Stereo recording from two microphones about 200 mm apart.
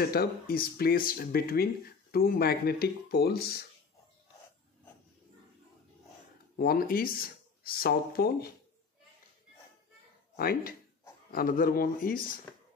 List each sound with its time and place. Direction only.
0.0 s speech: 50° left (ahead or behind)
6.5 s speech: 45° left (ahead or behind)
10.3 s speech: 45° left (ahead or behind)